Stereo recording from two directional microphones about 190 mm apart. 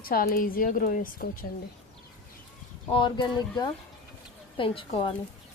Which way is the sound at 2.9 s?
25° left (ahead or behind).